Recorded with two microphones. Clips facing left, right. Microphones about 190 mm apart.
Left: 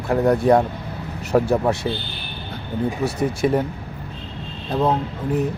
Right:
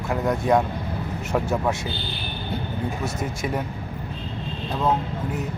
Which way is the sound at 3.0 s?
30° left (ahead or behind).